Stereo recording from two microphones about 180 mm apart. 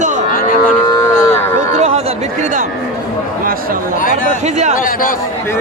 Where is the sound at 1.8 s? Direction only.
35° right (ahead or behind).